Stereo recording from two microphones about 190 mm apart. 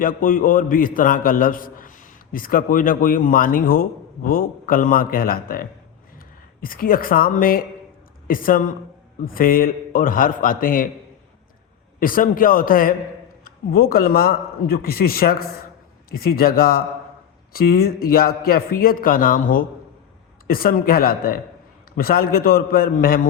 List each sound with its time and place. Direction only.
0.0 s a man's voice: 45° left (ahead or behind)
11.9 s a man's voice: 45° left (ahead or behind)